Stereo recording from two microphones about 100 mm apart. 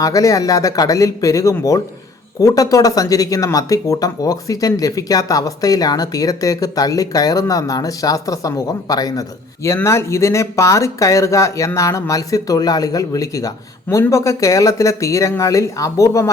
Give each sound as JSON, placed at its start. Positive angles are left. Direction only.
{"t": 0.0, "sound": "speech", "side_deg": 35}
{"t": 9.6, "sound": "speech", "side_deg": 30}